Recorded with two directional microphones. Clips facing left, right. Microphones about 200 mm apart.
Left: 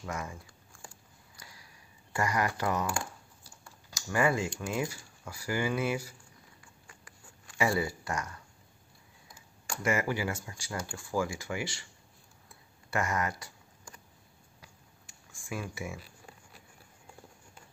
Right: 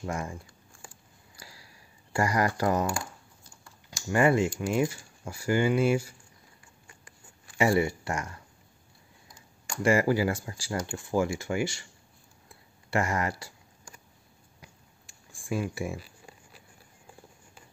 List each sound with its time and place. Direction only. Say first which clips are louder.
0.0 s speech: right 4 dB; 30° right (ahead or behind)
1.3 s a sound: right 4 dB; 30° right (ahead or behind)
2.1 s speech: right 4 dB; 35° right (ahead or behind)
3.9 s speech: right 5 dB; 25° right (ahead or behind)
7.1 s writing: even; 25° right (ahead or behind)
9.8 s speech: right 7 dB; 35° right (ahead or behind)
12.9 s speech: right 3 dB; 30° right (ahead or behind)
15.4 s speech: right 7 dB; 30° right (ahead or behind)